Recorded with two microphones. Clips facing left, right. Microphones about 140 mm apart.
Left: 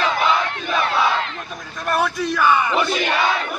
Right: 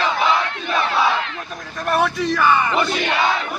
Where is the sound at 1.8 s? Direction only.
Centre (ahead or behind).